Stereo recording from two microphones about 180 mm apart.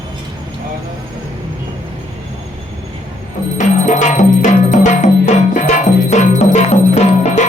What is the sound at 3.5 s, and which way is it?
Music, 45° left (ahead or behind).